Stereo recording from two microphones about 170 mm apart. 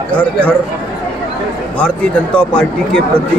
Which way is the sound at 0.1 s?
5° left (ahead or behind).